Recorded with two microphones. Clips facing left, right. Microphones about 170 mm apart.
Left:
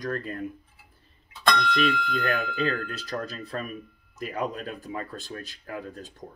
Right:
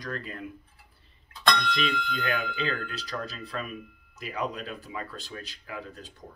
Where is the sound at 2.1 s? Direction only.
45° left (ahead or behind).